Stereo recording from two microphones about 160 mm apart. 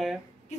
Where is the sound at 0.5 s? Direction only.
45° left (ahead or behind).